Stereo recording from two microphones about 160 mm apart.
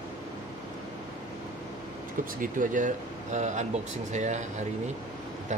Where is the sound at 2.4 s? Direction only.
55° right (ahead or behind).